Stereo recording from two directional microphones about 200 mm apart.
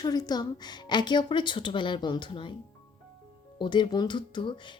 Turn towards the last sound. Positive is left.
turn(degrees=25)  # may be behind; listen again after turning